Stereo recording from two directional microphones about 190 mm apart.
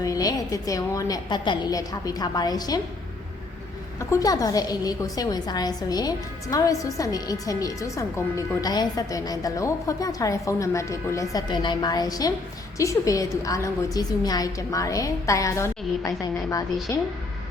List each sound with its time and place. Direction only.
0.0 s a woman's voice: 20° left (ahead or behind)
4.1 s a woman's voice: 20° left (ahead or behind)